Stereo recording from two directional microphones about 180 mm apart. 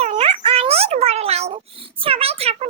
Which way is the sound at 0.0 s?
35° right (ahead or behind).